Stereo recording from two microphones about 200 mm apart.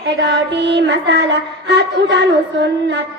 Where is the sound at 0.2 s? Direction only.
60° right (ahead or behind).